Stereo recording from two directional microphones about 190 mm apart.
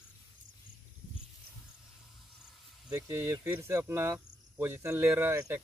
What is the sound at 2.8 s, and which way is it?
Speech, 15° right (ahead or behind).